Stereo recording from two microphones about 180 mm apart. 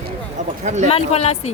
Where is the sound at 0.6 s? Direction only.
40° right (ahead or behind).